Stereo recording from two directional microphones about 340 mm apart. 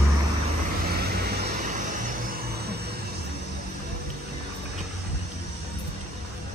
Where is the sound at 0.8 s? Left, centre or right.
Right.